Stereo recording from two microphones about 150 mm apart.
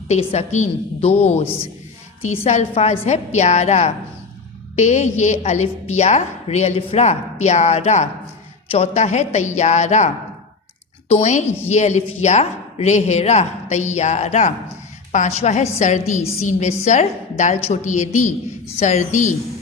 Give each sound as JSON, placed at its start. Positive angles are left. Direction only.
{"t": 0.1, "sound": "a woman's voice", "side_deg": 45}
{"t": 11.1, "sound": "a woman's voice", "side_deg": 50}